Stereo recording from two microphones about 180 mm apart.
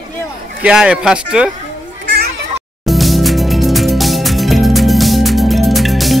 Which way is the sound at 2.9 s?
Centre (ahead or behind).